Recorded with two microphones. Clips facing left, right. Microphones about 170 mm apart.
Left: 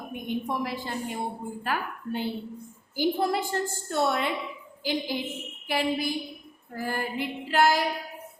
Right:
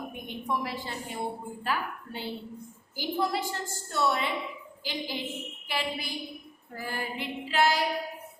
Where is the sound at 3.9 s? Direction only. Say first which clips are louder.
Left 2 dB; 55° left (ahead or behind).